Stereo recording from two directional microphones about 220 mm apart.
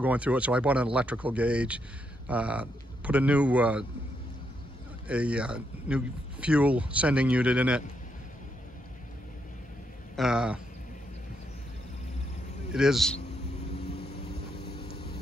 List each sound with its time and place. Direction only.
0.0 s speech: 5° right (ahead or behind)
5.0 s speech: 5° right (ahead or behind)
10.1 s speech: 5° right (ahead or behind)
12.7 s speech: centre (ahead or behind)
13.7 s vehicle: 25° left (ahead or behind)
14.3 s vehicle: 45° left (ahead or behind)